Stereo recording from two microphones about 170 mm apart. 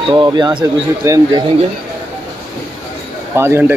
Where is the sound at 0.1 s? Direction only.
25° right (ahead or behind).